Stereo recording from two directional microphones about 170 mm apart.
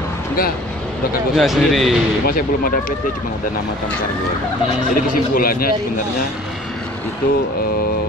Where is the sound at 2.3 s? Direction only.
55° left (ahead or behind).